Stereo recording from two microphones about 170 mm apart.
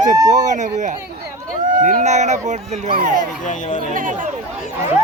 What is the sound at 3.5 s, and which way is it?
Speech, 45° left (ahead or behind).